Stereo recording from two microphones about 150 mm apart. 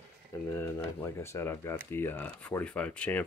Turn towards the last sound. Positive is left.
turn(degrees=10)  # may be behind; listen again after turning